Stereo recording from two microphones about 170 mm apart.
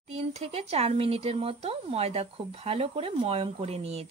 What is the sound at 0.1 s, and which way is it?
Speech, 35° right (ahead or behind).